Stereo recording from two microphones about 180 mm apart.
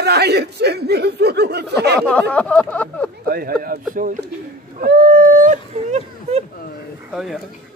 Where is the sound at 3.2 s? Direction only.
55° right (ahead or behind); by 6.4 s 35° right (ahead or behind).